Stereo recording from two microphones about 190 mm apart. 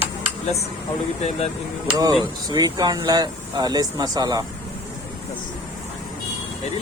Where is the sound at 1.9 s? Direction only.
20° right (ahead or behind).